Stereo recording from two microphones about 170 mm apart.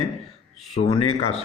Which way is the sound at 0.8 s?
35° left (ahead or behind).